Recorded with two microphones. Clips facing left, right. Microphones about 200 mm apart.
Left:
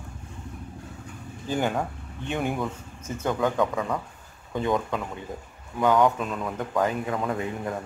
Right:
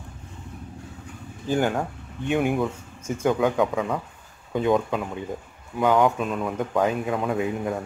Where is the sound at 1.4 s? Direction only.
5° right (ahead or behind).